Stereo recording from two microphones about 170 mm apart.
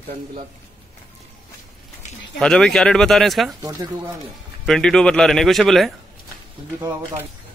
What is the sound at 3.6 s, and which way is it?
Speech, 20° right (ahead or behind).